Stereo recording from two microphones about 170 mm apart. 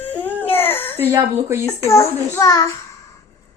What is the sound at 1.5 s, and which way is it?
Speech, 15° right (ahead or behind).